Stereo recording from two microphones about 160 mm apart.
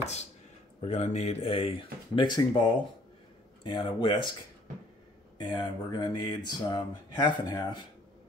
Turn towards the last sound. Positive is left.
turn(degrees=25)  # may be behind; listen again after turning